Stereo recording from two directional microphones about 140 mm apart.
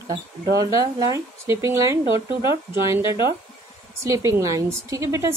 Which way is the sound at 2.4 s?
35° left (ahead or behind).